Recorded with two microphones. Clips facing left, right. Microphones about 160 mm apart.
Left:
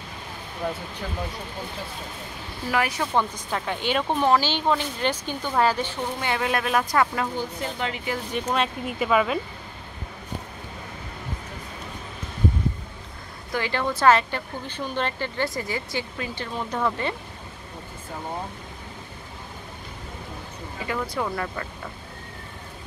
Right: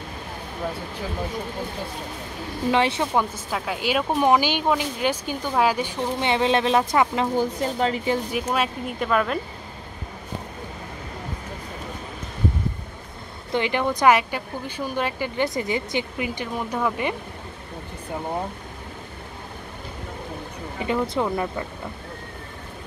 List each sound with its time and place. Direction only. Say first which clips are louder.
2.7 s speech: right 3 dB; 25° right (ahead or behind)
3.2 s speech: right 1 dB; 5° right (ahead or behind)
6.1 s speech: right 6 dB; 25° right (ahead or behind)
7.3 s speech: right 6 dB; 35° right (ahead or behind)
8.3 s speech: right 1 dB; 5° right (ahead or behind)
13.5 s speech: right 3 dB; 20° right (ahead or behind)
20.8 s speech: right 5 dB; 20° right (ahead or behind)